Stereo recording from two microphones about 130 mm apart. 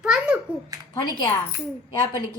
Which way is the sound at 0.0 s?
5° right (ahead or behind).